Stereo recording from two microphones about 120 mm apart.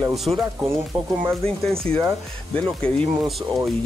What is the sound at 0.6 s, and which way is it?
Speech, 20° right (ahead or behind).